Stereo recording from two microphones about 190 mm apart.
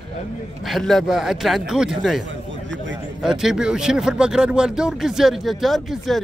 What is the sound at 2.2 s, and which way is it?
Speech, 75° right (ahead or behind).